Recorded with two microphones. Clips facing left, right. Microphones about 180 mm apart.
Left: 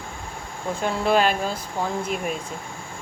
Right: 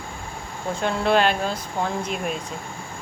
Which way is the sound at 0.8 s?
5° left (ahead or behind).